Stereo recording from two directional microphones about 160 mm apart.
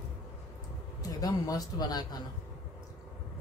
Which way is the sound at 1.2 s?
25° left (ahead or behind).